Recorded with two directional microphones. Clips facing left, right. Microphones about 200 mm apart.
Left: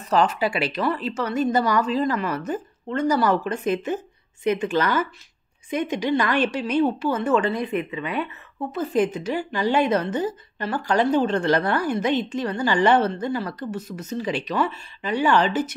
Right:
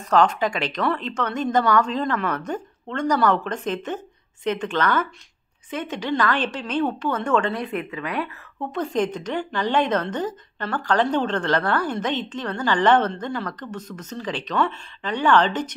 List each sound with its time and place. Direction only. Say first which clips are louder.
0.1 s a woman's voice: right 1 dB; 5° left (ahead or behind)